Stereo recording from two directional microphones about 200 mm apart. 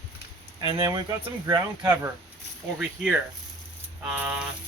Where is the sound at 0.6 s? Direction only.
25° right (ahead or behind).